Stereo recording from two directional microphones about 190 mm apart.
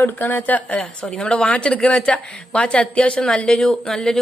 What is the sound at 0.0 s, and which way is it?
Speech, 10° left (ahead or behind).